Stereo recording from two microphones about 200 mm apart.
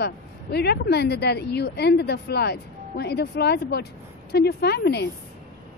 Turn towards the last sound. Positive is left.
turn(degrees=55)  # may be behind; listen again after turning